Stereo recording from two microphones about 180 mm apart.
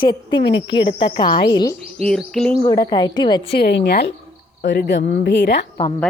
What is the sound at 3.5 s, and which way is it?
A woman's voice, 65° left (ahead or behind).